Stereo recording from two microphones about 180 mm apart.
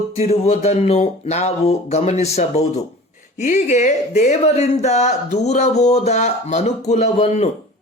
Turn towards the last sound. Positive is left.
turn(degrees=40)  # may be behind; listen again after turning